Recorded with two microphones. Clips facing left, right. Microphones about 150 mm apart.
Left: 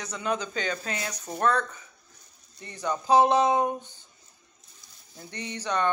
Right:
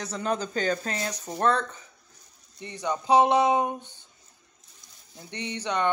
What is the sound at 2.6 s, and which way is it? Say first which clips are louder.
Speech: right 1 dB; 15° right (ahead or behind).